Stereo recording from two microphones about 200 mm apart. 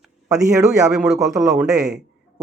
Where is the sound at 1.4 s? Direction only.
5° right (ahead or behind).